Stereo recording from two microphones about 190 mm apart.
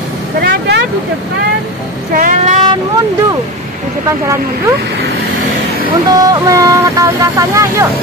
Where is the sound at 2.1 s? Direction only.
45° right (ahead or behind).